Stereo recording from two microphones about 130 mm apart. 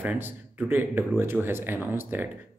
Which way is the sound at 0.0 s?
15° right (ahead or behind).